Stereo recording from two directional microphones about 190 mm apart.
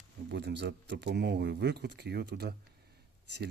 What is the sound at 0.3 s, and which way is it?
Speech, 65° right (ahead or behind).